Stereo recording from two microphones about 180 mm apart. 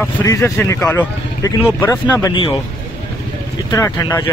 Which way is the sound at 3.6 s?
20° left (ahead or behind).